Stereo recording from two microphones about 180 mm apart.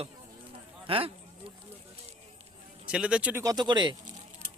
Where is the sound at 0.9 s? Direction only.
30° right (ahead or behind).